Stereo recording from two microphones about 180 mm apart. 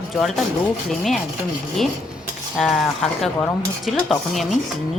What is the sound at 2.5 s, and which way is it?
Speech, centre (ahead or behind).